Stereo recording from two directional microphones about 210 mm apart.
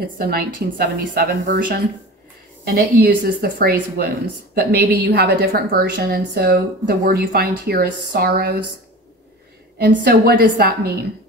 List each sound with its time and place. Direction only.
0.2 s a woman's voice: 45° right (ahead or behind)
9.8 s a woman's voice: 45° right (ahead or behind)